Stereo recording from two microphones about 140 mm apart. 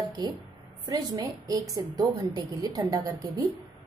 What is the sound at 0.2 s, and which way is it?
A woman's voice, 30° right (ahead or behind).